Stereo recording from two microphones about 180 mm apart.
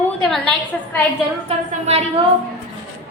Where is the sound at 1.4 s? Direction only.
35° right (ahead or behind).